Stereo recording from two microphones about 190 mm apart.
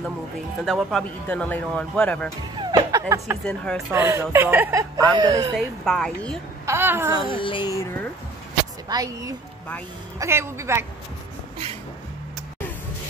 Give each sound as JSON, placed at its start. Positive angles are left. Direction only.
{"t": 0.7, "sound": "speech", "side_deg": 5}
{"t": 2.5, "sound": "music", "side_deg": -20}
{"t": 3.4, "sound": "speech", "side_deg": 5}
{"t": 3.9, "sound": "a woman's voice", "side_deg": -15}
{"t": 5.6, "sound": "speech", "side_deg": 0}
{"t": 6.6, "sound": "a sound", "side_deg": -15}
{"t": 7.2, "sound": "a child's voice", "side_deg": 25}
{"t": 8.8, "sound": "a woman's voice", "side_deg": -20}